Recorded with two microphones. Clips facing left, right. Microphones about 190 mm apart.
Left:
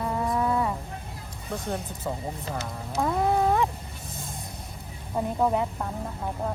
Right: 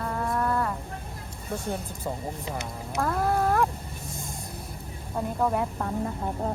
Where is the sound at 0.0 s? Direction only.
5° left (ahead or behind).